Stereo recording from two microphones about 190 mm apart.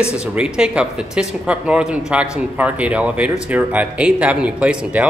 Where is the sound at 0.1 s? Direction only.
5° right (ahead or behind).